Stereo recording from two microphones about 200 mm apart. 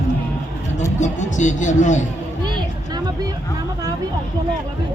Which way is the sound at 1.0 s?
35° left (ahead or behind).